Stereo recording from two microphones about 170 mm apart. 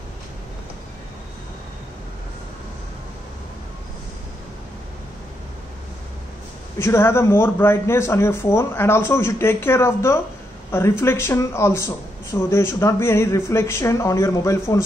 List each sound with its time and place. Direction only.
6.8 s speech: 15° left (ahead or behind)